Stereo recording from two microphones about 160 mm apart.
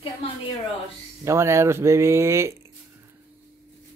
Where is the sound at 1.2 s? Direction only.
15° right (ahead or behind).